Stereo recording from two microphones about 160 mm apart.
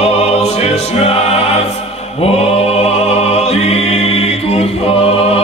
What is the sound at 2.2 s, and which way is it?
Music, 40° left (ahead or behind).